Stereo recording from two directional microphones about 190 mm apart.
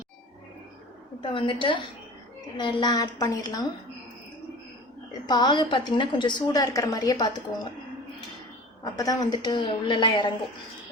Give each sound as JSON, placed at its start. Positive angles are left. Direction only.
{"t": 1.2, "sound": "a woman's voice", "side_deg": 25}
{"t": 5.2, "sound": "a woman's voice", "side_deg": 20}
{"t": 8.8, "sound": "a woman's voice", "side_deg": 20}